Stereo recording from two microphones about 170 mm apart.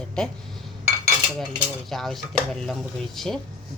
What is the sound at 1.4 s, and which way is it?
A woman's voice, centre (ahead or behind).